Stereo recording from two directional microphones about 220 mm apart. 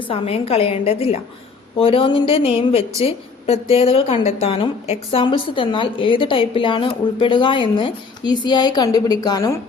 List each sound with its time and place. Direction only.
0.1 s a woman's voice: 25° left (ahead or behind)